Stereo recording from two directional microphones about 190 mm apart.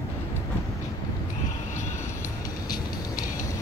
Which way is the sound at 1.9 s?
15° left (ahead or behind).